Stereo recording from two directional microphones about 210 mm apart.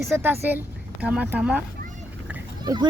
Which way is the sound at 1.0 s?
5° right (ahead or behind).